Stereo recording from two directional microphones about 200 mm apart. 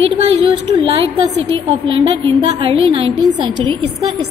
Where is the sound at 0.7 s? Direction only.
30° right (ahead or behind).